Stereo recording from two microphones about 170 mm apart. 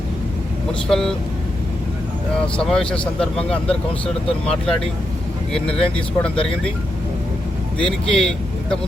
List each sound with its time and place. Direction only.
0.9 s speech: 5° left (ahead or behind)
2.6 s speech: 5° left (ahead or behind)
7.8 s speech: 5° left (ahead or behind)